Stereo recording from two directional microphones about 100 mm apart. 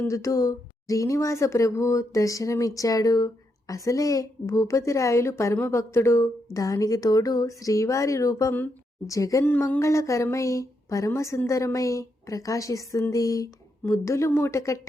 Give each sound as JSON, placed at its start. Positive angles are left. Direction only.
{"t": 0.0, "sound": "speech", "side_deg": 30}
{"t": 9.4, "sound": "a sound", "side_deg": 20}
{"t": 10.3, "sound": "speech", "side_deg": 30}